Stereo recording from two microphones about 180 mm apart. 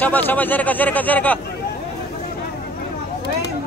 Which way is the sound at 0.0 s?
10° left (ahead or behind).